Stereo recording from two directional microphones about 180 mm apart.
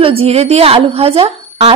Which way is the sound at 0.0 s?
30° right (ahead or behind).